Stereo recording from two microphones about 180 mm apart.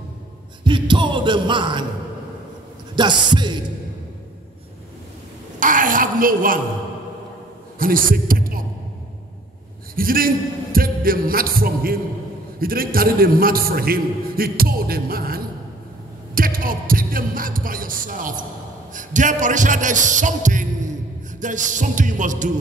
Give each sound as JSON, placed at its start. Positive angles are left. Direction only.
{"t": 0.7, "sound": "music", "side_deg": -25}
{"t": 3.0, "sound": "music", "side_deg": -25}
{"t": 5.6, "sound": "a woman's voice", "side_deg": -50}
{"t": 7.8, "sound": "speech", "side_deg": -50}
{"t": 9.9, "sound": "a man's voice", "side_deg": -55}